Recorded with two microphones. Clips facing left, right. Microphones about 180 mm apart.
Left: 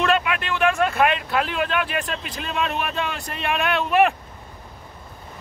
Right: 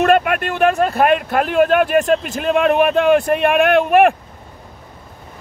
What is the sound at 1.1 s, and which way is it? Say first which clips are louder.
Speech: right 9 dB; 50° right (ahead or behind).